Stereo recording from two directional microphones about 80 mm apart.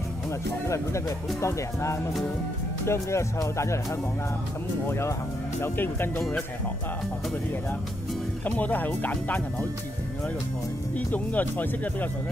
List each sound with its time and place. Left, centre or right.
0.7 s speech: left
4.8 s speech: left
8.5 s speech: left
11.0 s speech: left